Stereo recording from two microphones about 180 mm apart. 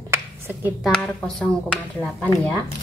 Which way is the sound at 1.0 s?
5° left (ahead or behind).